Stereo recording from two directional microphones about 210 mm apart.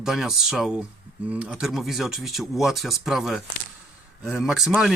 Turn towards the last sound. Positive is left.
turn(degrees=0)  # may be behind; listen again after turning